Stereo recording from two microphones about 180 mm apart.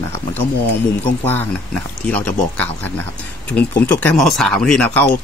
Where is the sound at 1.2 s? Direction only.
10° left (ahead or behind).